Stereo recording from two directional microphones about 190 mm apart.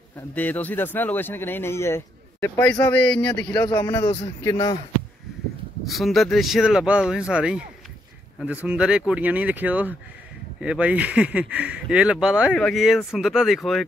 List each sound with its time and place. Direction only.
0.3 s speech: 10° left (ahead or behind)
4.0 s speech: 30° left (ahead or behind)
4.4 s speech: 20° left (ahead or behind)
5.9 s speech: centre (ahead or behind)